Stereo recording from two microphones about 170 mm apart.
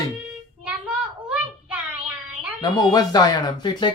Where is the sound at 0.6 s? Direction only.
10° right (ahead or behind).